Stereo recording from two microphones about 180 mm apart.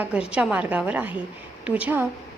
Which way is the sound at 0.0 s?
5° right (ahead or behind).